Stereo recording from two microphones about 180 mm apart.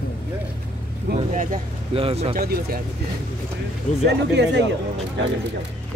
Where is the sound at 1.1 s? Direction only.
60° right (ahead or behind).